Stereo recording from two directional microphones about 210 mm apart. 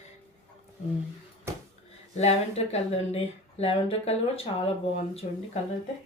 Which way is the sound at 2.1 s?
30° left (ahead or behind).